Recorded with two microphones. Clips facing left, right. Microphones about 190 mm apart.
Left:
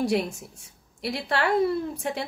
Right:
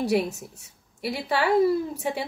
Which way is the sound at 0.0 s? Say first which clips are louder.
Right 1 dB; 5° right (ahead or behind).